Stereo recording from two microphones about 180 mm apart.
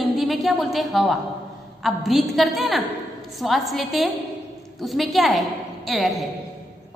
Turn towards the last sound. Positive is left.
turn(degrees=0)  # may be behind; listen again after turning